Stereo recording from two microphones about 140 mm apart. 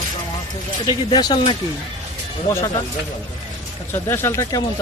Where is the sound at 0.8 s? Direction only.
30° left (ahead or behind).